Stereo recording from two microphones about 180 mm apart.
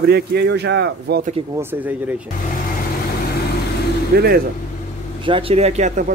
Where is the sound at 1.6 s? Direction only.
10° right (ahead or behind).